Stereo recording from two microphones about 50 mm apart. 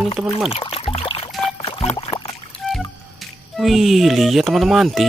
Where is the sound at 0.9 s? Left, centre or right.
Centre.